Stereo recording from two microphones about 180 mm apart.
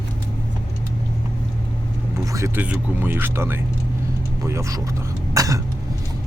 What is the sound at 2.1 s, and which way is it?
Speech, 15° right (ahead or behind).